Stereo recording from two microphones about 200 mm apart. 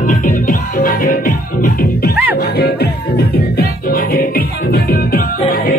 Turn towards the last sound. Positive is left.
turn(degrees=50)  # may be behind; listen again after turning